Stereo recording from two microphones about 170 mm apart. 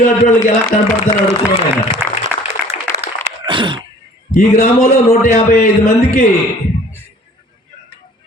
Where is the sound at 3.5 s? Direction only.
30° right (ahead or behind).